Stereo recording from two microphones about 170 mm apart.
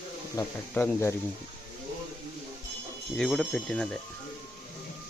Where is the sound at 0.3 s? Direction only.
15° left (ahead or behind).